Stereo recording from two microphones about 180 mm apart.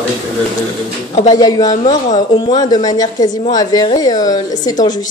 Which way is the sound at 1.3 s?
20° left (ahead or behind).